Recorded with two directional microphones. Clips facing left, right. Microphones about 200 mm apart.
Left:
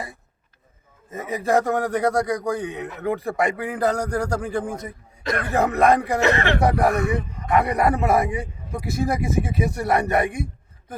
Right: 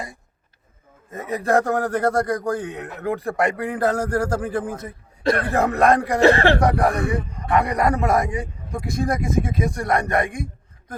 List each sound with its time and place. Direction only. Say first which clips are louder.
1.1 s a man's voice: right 1 dB; centre (ahead or behind)
5.2 s speech: right 5 dB; 30° right (ahead or behind)
5.5 s a man's voice: left 2 dB; centre (ahead or behind)
6.1 s speech: right 5 dB; 30° right (ahead or behind)
7.5 s a man's voice: even; 5° left (ahead or behind)